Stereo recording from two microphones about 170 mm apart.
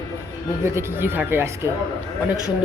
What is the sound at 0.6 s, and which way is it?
Speech, 15° right (ahead or behind).